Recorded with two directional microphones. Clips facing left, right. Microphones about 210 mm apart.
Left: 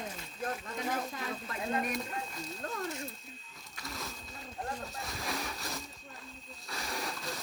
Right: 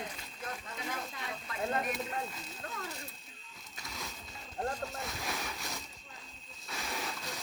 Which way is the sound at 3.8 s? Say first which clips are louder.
Left 3 dB; centre (ahead or behind).